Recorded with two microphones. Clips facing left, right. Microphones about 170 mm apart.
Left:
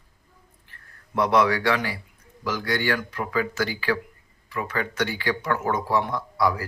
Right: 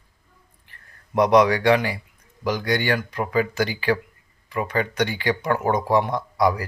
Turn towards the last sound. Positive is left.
turn(degrees=-20)  # may be behind; listen again after turning